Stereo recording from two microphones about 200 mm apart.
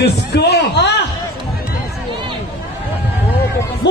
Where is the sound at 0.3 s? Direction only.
55° left (ahead or behind).